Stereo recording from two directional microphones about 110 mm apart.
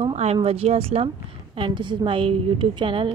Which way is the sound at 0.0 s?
70° right (ahead or behind).